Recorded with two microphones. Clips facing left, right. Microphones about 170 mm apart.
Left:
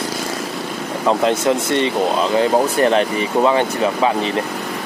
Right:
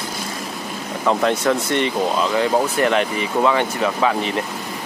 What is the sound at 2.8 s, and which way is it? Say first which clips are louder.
Speech: left 3 dB; 30° left (ahead or behind).